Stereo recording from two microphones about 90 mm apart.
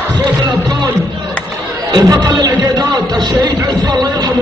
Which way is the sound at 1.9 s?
50° right (ahead or behind).